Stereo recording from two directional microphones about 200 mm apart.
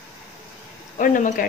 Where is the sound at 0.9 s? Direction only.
40° left (ahead or behind).